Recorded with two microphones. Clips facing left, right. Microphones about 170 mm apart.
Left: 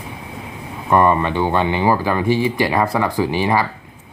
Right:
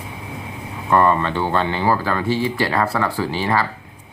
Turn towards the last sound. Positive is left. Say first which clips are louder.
# left 3 dB
turn(degrees=15)  # may be behind; listen again after turning